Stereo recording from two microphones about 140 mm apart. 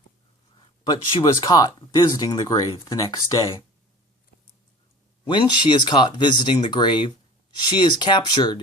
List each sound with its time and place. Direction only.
0.9 s speech: 30° left (ahead or behind)
5.2 s speech: 35° left (ahead or behind)